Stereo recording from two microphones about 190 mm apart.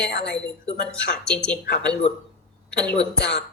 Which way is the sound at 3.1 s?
65° left (ahead or behind).